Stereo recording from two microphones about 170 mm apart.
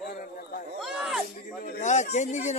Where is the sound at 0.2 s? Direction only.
55° left (ahead or behind).